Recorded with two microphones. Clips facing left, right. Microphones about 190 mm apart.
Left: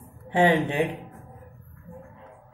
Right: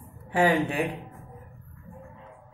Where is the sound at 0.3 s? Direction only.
25° left (ahead or behind).